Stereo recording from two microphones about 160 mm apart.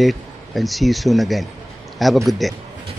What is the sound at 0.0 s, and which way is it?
Speech, centre (ahead or behind).